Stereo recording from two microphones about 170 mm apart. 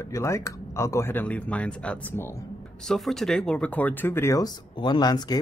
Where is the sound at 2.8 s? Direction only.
Centre (ahead or behind).